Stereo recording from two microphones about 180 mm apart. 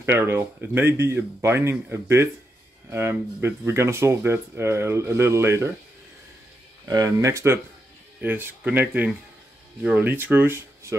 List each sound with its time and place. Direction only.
0.0 s speech: 15° right (ahead or behind)
6.9 s speech: 20° right (ahead or behind)